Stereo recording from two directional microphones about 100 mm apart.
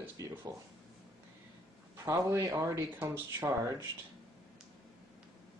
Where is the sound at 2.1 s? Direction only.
30° right (ahead or behind).